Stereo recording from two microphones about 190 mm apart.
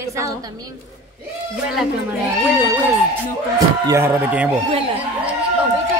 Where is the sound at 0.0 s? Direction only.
15° right (ahead or behind).